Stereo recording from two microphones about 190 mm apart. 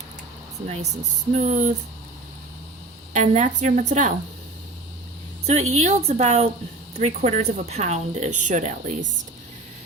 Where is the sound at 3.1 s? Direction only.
40° right (ahead or behind).